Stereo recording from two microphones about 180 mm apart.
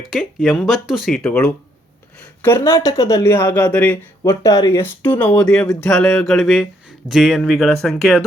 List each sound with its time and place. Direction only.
0.0 s a woman's voice: centre (ahead or behind)
4.2 s speech: 20° left (ahead or behind); by 8.2 s centre (ahead or behind)